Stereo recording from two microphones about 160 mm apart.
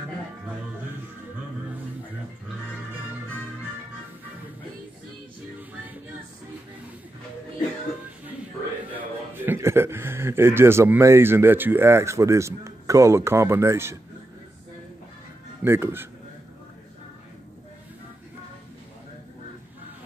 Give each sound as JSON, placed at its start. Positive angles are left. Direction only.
{"t": 8.9, "sound": "a man's voice", "side_deg": -15}
{"t": 15.6, "sound": "speech", "side_deg": -15}